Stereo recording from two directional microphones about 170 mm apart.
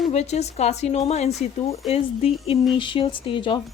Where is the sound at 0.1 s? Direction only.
40° left (ahead or behind).